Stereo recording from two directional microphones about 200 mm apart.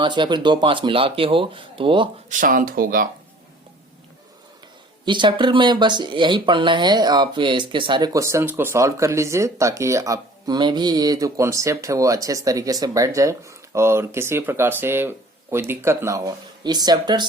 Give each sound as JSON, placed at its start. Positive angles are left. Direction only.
{"t": 0.0, "sound": "speech", "side_deg": -25}
{"t": 2.3, "sound": "speech", "side_deg": -45}
{"t": 5.0, "sound": "speech", "side_deg": -25}